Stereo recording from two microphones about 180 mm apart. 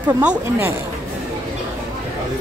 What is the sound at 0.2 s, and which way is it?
Speech, 10° right (ahead or behind).